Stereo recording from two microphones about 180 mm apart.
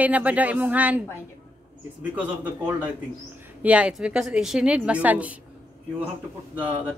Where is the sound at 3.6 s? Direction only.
5° right (ahead or behind).